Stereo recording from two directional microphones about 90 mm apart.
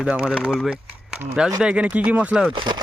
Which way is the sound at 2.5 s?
60° right (ahead or behind).